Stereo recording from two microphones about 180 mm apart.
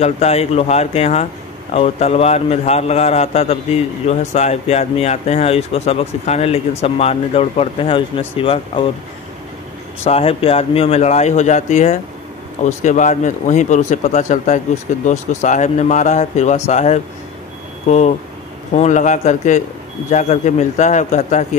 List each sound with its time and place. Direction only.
0.0 s a man's voice: 35° left (ahead or behind)
10.0 s a man's voice: 35° left (ahead or behind)